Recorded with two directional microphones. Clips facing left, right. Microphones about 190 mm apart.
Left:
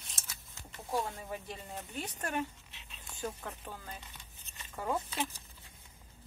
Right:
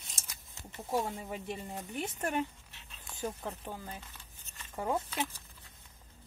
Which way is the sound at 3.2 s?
10° right (ahead or behind).